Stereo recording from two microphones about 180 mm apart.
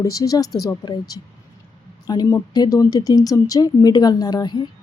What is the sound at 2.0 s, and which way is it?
Speech, 20° left (ahead or behind).